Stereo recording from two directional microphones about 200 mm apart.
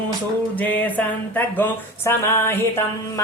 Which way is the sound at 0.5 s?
10° left (ahead or behind).